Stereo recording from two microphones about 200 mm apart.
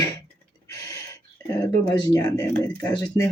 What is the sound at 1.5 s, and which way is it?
Speech, 20° left (ahead or behind).